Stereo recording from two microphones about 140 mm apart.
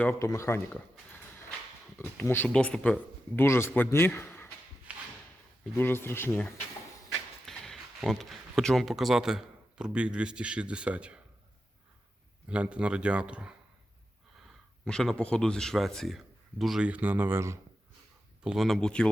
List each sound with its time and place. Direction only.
0.0 s speech: 15° left (ahead or behind)
2.1 s speech: 15° left (ahead or behind)
4.9 s drawer open or close: 10° right (ahead or behind)
5.7 s speech: 15° left (ahead or behind)
7.4 s speech: centre (ahead or behind)
12.5 s speech: 10° right (ahead or behind)
14.4 s speech: 5° left (ahead or behind); by 17.6 s 20° right (ahead or behind)
18.4 s speech: centre (ahead or behind)